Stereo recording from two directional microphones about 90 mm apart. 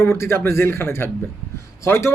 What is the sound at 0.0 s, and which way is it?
Speech, 30° left (ahead or behind).